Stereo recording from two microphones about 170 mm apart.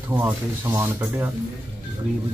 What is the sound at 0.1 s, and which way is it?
Speech, 15° right (ahead or behind).